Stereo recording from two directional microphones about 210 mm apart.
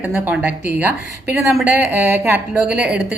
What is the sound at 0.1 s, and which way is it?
A woman's voice, 10° right (ahead or behind).